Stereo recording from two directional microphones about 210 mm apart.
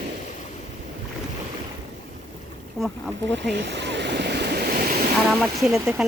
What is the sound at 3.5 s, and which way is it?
Waves, 55° right (ahead or behind).